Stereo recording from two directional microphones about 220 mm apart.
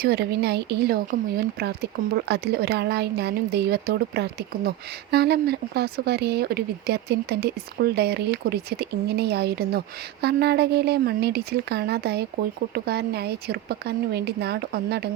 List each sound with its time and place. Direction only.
0.0 s speech: 45° right (ahead or behind)